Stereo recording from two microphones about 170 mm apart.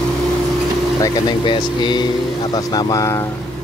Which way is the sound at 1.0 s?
25° left (ahead or behind).